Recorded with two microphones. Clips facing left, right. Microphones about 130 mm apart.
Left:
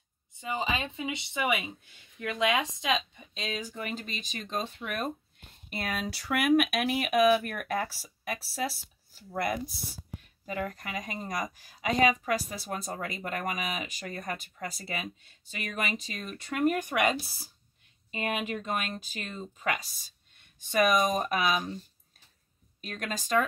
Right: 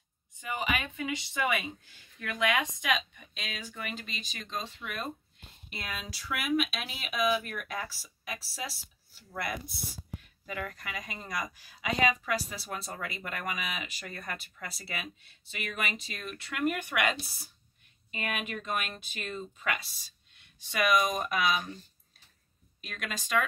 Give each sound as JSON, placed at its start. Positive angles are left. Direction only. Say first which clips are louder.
{"t": 0.4, "sound": "a woman's voice", "louder": "left 2 dB", "side_deg": 25}
{"t": 9.3, "sound": "speech", "louder": "left 5 dB", "side_deg": 40}
{"t": 12.3, "sound": "speech", "louder": "left 3 dB", "side_deg": 30}
{"t": 21.0, "sound": "speech", "louder": "left 2 dB", "side_deg": 35}
{"t": 22.8, "sound": "speech", "louder": "left 4 dB", "side_deg": 35}